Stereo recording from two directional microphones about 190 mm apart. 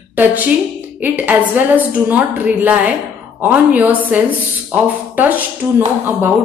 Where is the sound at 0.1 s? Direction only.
10° right (ahead or behind).